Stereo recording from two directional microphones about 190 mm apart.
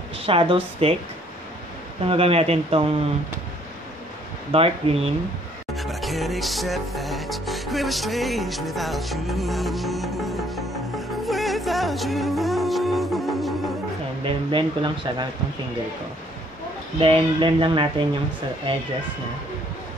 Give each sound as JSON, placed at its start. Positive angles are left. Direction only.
{"t": 0.3, "sound": "speech", "side_deg": -30}
{"t": 2.0, "sound": "speech", "side_deg": -30}
{"t": 4.5, "sound": "speech", "side_deg": -30}
{"t": 5.8, "sound": "music", "side_deg": 0}
{"t": 14.2, "sound": "speech", "side_deg": -25}
{"t": 17.0, "sound": "speech", "side_deg": -25}